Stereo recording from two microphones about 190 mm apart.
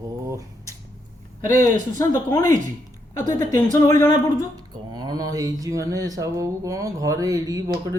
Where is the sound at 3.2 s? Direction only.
40° right (ahead or behind).